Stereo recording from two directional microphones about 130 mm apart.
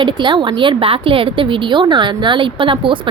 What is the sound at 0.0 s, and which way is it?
Speech, 35° right (ahead or behind).